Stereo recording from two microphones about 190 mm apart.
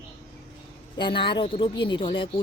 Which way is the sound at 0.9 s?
25° left (ahead or behind).